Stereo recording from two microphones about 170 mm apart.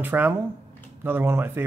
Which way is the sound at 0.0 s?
10° right (ahead or behind).